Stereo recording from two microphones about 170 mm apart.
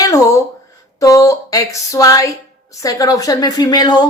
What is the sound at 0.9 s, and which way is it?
A woman's voice, 20° left (ahead or behind).